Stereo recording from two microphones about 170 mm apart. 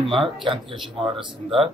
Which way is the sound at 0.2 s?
30° right (ahead or behind).